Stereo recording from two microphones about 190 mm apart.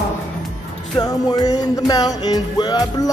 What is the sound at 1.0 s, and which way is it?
Music, 20° left (ahead or behind).